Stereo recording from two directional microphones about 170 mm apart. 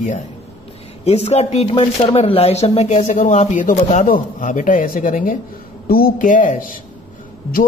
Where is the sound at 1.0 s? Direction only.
40° left (ahead or behind).